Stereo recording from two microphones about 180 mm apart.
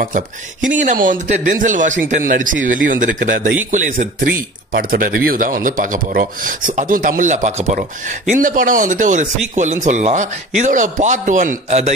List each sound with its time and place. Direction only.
0.0 s speech: 45° right (ahead or behind)